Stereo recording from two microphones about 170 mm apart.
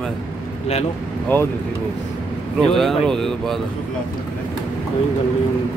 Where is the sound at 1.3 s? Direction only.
10° left (ahead or behind).